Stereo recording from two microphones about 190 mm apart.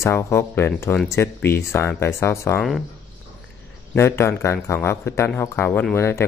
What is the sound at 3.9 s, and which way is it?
A man's voice, 10° left (ahead or behind).